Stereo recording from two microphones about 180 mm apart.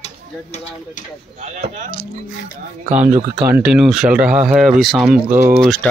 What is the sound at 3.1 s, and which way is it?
Speech, 10° right (ahead or behind).